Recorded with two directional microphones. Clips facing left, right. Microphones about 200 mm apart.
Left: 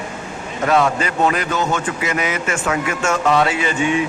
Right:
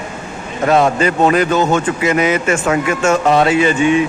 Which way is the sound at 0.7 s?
25° right (ahead or behind).